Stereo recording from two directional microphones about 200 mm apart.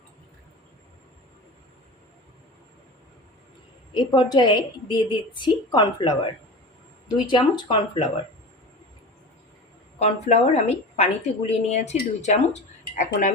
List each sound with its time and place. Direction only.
3.9 s a woman's voice: 20° left (ahead or behind)
10.0 s a woman's voice: 35° left (ahead or behind)